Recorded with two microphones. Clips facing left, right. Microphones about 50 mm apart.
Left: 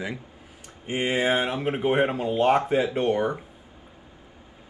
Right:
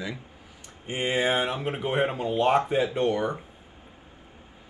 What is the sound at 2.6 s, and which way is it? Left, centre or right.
Speech, left.